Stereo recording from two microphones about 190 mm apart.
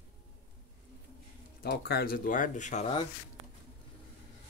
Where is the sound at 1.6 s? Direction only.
60° left (ahead or behind).